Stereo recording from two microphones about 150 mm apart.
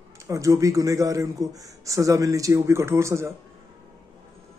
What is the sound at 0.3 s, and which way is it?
A man's voice, 20° right (ahead or behind).